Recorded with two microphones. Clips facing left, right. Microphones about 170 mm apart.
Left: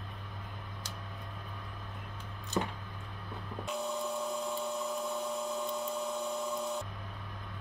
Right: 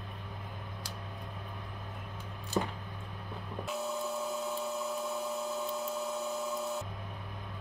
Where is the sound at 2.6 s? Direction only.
15° right (ahead or behind).